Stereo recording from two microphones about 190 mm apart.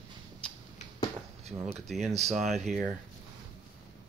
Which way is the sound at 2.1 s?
35° right (ahead or behind).